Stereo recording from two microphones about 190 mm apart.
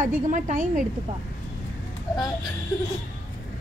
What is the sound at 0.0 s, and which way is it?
Speech, 40° right (ahead or behind).